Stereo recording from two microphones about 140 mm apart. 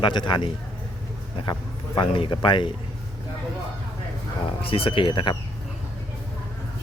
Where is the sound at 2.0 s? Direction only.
35° left (ahead or behind).